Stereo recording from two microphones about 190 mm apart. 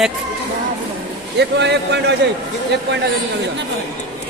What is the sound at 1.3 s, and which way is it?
Speech, 65° right (ahead or behind).